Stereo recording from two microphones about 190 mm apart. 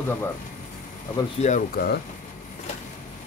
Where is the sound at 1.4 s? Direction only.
40° left (ahead or behind).